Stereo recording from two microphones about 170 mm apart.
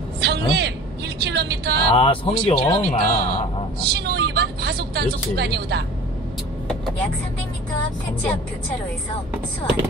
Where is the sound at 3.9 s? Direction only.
75° right (ahead or behind).